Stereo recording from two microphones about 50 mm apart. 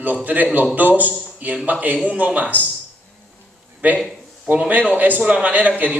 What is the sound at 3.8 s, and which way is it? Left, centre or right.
A man's voice, right.